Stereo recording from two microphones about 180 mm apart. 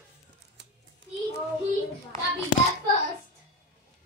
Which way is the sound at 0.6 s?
75° right (ahead or behind).